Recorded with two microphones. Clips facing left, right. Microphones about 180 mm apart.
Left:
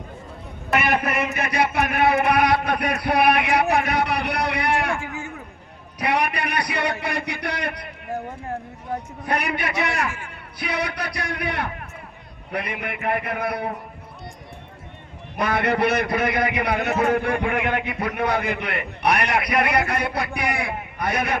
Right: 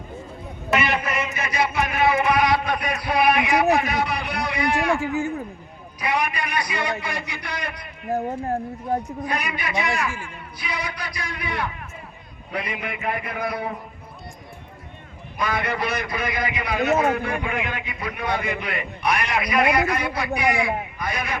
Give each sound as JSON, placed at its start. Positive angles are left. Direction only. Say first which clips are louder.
{"t": 0.8, "sound": "a man's voice", "louder": "left 5 dB", "side_deg": 55}
{"t": 4.9, "sound": "speech", "louder": "right 7 dB", "side_deg": -35}
{"t": 6.0, "sound": "a man's voice", "louder": "left 2 dB", "side_deg": 60}
{"t": 8.1, "sound": "speech", "louder": "right 5 dB", "side_deg": -35}
{"t": 9.2, "sound": "a man's voice", "louder": "left 3 dB", "side_deg": 60}
{"t": 15.4, "sound": "a man's voice", "louder": "left 4 dB", "side_deg": 60}